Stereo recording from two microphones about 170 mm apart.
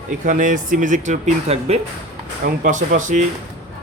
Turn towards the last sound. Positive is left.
turn(degrees=-50)  # may be behind; listen again after turning